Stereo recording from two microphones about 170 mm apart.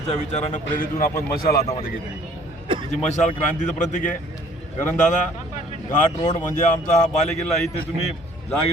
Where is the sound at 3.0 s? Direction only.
45° left (ahead or behind).